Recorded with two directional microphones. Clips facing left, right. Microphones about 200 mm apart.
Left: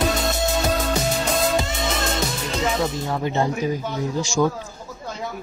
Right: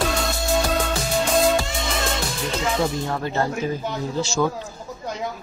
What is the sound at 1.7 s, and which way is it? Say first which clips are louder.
Music: left 1 dB; centre (ahead or behind).